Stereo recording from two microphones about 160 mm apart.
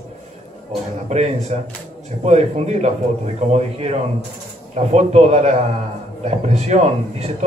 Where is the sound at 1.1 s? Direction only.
45° right (ahead or behind).